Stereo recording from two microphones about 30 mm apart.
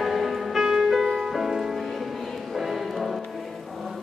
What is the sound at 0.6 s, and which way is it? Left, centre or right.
Music, centre.